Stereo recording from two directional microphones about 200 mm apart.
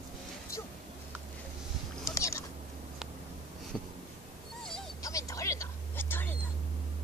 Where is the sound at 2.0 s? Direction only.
15° left (ahead or behind).